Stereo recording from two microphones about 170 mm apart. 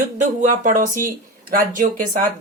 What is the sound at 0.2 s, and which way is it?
Speech, 45° right (ahead or behind).